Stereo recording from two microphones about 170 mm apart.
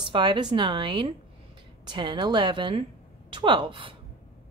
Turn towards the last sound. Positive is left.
turn(degrees=-30)  # may be behind; listen again after turning